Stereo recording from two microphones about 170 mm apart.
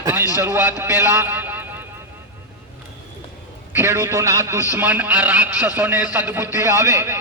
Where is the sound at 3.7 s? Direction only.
15° right (ahead or behind).